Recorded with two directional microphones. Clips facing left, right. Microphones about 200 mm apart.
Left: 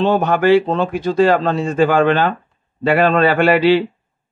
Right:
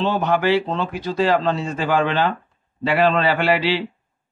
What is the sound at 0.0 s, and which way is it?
Speech, 50° left (ahead or behind).